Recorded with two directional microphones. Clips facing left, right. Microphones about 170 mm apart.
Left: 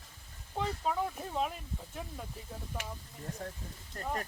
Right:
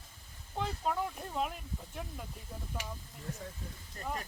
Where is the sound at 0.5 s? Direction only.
Centre (ahead or behind).